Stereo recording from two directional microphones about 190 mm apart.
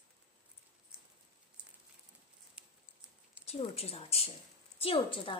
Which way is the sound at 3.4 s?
35° left (ahead or behind).